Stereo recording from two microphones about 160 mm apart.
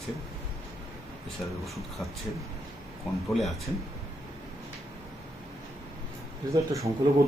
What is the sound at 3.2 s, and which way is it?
Speech, centre (ahead or behind).